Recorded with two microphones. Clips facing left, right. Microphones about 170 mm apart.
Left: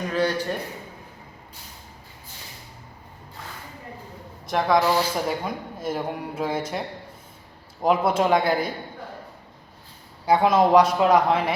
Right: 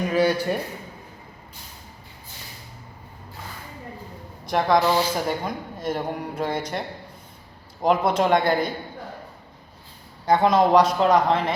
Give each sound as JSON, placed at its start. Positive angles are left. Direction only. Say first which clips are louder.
{"t": 0.0, "sound": "speech", "louder": "right 3 dB", "side_deg": -10}
{"t": 4.4, "sound": "speech", "louder": "right 1 dB", "side_deg": 0}
{"t": 4.9, "sound": "speech", "louder": "right 1 dB", "side_deg": -10}
{"t": 5.3, "sound": "speech", "louder": "right 1 dB", "side_deg": 5}
{"t": 10.2, "sound": "speech", "louder": "even", "side_deg": 5}